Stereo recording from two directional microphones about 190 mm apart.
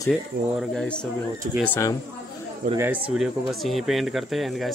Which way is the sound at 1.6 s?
10° left (ahead or behind).